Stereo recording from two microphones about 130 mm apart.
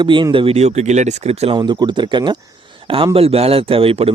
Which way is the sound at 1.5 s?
35° right (ahead or behind).